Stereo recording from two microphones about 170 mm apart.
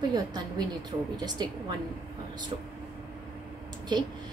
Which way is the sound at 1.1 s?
25° right (ahead or behind).